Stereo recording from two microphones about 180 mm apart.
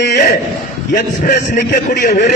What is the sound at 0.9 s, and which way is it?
Speech, 45° left (ahead or behind).